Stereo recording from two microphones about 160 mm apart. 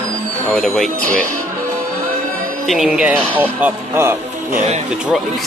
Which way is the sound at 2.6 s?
Centre (ahead or behind).